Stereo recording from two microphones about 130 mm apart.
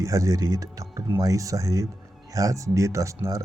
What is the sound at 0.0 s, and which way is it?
Speech, 25° right (ahead or behind).